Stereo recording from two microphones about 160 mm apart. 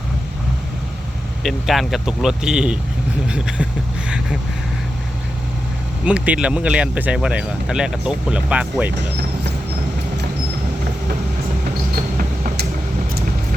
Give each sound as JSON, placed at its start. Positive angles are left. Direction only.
{"t": 1.5, "sound": "speech", "side_deg": 0}
{"t": 6.1, "sound": "speech", "side_deg": -10}
{"t": 11.9, "sound": "a sound", "side_deg": -60}